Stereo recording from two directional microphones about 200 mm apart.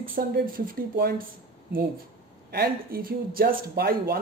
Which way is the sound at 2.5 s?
50° right (ahead or behind).